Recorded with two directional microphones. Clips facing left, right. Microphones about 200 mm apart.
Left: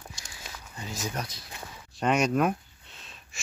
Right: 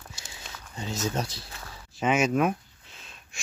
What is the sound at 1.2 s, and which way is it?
Speech, 30° right (ahead or behind).